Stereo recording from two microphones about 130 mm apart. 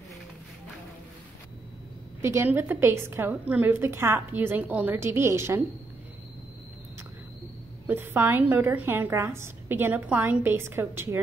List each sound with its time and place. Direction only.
2.2 s a woman's voice: 15° right (ahead or behind)
7.8 s a woman's voice: 15° right (ahead or behind)